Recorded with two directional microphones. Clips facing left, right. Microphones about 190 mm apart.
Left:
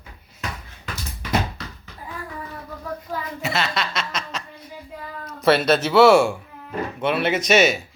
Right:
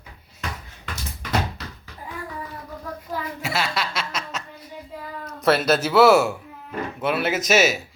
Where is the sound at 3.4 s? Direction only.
10° right (ahead or behind).